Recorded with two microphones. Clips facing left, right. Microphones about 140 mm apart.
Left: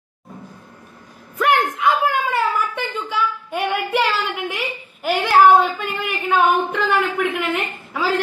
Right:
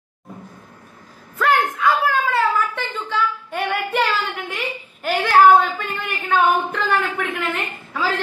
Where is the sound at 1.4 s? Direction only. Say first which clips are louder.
Left 1 dB; 20° left (ahead or behind).